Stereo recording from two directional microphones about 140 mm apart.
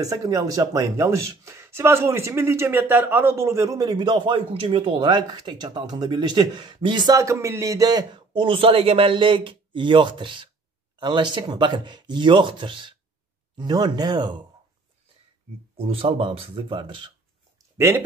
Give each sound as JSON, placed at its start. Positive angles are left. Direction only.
{"t": 0.0, "sound": "speech", "side_deg": -25}
{"t": 15.7, "sound": "speech", "side_deg": -40}
{"t": 17.7, "sound": "speech", "side_deg": -20}